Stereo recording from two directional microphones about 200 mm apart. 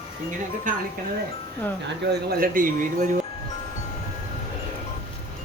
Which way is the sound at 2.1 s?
45° right (ahead or behind).